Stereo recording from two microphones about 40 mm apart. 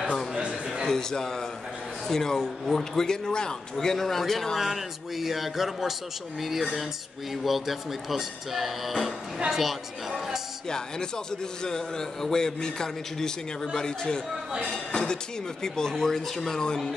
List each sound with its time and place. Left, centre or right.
0.8 s a man's voice: centre
4.6 s speech: centre
11.6 s a man's voice: centre